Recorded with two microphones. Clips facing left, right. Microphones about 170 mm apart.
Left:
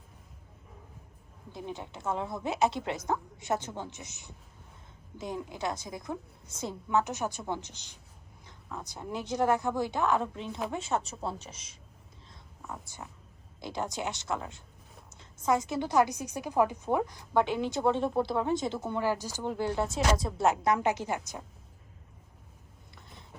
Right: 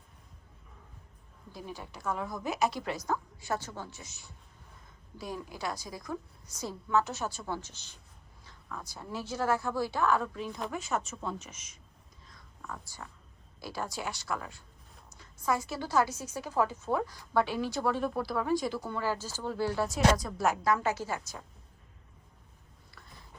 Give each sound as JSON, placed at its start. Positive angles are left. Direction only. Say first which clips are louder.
{"t": 1.5, "sound": "a woman's voice", "louder": "left 3 dB", "side_deg": 20}
{"t": 12.3, "sound": "whispering", "louder": "left 1 dB", "side_deg": 20}
{"t": 13.6, "sound": "a woman's voice", "louder": "left 3 dB", "side_deg": 20}